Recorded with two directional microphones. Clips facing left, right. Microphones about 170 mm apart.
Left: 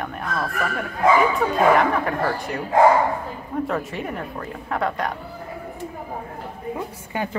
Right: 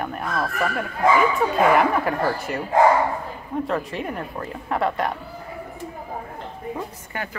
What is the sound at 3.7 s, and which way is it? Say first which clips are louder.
Speech: even; centre (ahead or behind).